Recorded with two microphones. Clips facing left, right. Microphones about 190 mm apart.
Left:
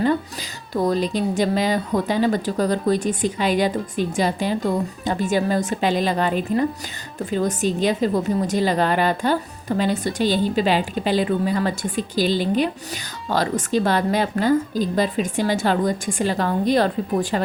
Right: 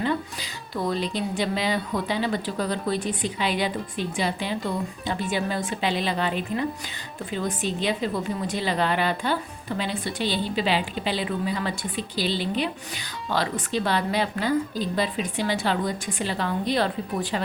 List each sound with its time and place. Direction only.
0.7 s speech: 45° left (ahead or behind)